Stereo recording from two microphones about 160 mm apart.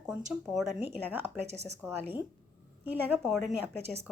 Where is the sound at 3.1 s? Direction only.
Centre (ahead or behind).